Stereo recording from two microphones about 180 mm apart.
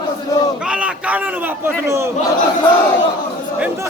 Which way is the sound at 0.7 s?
5° right (ahead or behind).